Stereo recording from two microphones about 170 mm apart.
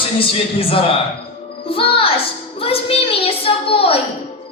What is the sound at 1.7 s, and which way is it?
Music, 35° left (ahead or behind).